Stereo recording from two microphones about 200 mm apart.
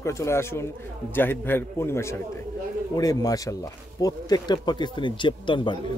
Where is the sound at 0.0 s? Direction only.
15° left (ahead or behind).